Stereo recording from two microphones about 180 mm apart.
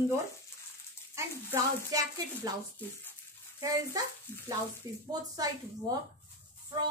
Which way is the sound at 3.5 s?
20° right (ahead or behind).